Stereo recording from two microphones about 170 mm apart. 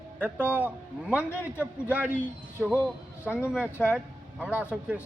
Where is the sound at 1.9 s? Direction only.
10° right (ahead or behind).